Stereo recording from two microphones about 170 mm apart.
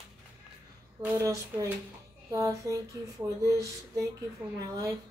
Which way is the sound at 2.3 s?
20° right (ahead or behind).